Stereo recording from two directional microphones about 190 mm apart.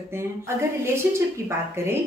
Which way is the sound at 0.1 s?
15° right (ahead or behind).